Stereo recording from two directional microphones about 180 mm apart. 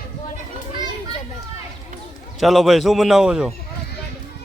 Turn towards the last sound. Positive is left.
turn(degrees=-5)  # may be behind; listen again after turning